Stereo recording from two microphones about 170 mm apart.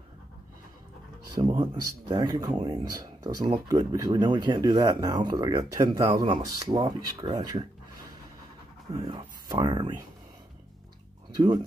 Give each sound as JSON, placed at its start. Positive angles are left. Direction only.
{"t": 1.3, "sound": "speech", "side_deg": -25}
{"t": 8.9, "sound": "speech", "side_deg": -25}
{"t": 11.3, "sound": "speech", "side_deg": -25}